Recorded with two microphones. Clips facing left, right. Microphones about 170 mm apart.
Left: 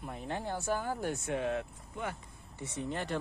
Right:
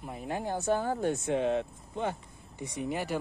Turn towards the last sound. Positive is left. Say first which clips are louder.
# right 3 dB
turn(degrees=-10)  # may be behind; listen again after turning